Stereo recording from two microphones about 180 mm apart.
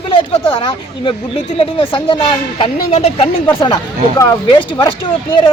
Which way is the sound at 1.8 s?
30° left (ahead or behind).